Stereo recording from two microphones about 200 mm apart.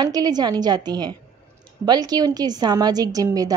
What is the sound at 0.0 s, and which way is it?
A woman's voice, 20° right (ahead or behind).